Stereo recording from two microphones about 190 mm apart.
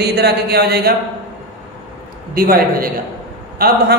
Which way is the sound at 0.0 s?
60° right (ahead or behind).